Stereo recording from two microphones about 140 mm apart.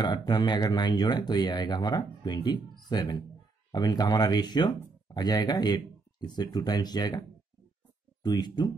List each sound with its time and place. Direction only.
0.0 s speech: 30° left (ahead or behind)